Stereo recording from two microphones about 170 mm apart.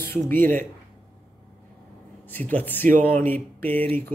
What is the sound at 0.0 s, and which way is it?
Speech, 10° left (ahead or behind).